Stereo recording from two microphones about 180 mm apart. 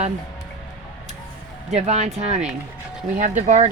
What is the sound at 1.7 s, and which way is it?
Speech, 40° right (ahead or behind).